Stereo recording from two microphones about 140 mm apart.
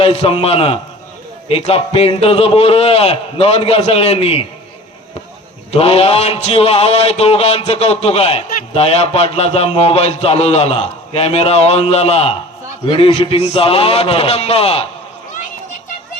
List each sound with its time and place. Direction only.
0.0 s a man's voice: 45° left (ahead or behind)
5.7 s a man's voice: 45° left (ahead or behind)